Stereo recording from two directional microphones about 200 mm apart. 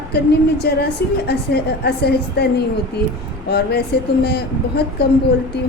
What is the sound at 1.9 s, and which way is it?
A woman's voice, 55° left (ahead or behind).